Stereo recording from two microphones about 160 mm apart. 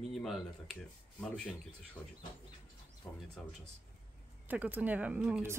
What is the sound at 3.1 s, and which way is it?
Speech, 5° left (ahead or behind).